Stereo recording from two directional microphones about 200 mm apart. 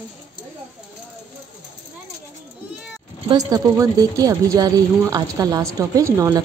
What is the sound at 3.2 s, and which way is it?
Speech, 20° right (ahead or behind).